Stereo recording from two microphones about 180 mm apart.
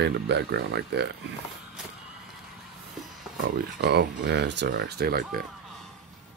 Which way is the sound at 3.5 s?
65° right (ahead or behind).